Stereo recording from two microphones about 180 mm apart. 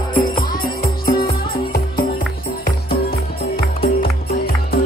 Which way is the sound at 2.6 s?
55° left (ahead or behind).